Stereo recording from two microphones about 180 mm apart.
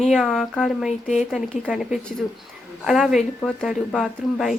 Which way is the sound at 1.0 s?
40° left (ahead or behind).